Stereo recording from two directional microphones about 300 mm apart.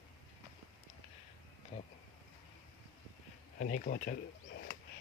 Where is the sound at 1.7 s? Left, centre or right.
Centre.